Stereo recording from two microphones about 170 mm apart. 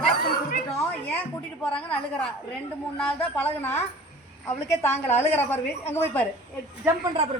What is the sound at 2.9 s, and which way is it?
A woman's voice, 10° left (ahead or behind).